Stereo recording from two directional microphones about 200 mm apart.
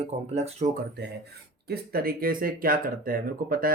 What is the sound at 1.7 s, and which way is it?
Speech, 45° right (ahead or behind).